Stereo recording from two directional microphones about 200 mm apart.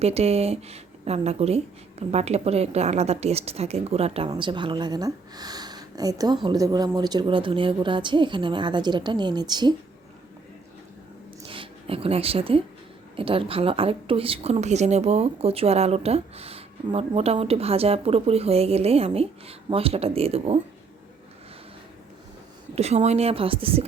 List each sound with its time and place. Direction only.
0.0 s speech: 30° right (ahead or behind)
11.4 s speech: 25° right (ahead or behind)
22.7 s speech: 30° right (ahead or behind)